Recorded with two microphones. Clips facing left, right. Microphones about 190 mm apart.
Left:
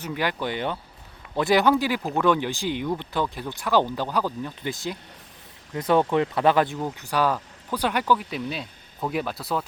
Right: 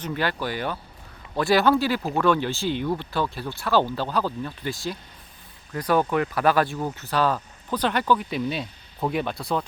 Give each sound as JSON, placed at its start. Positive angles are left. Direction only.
{"t": 0.0, "sound": "speech", "side_deg": 10}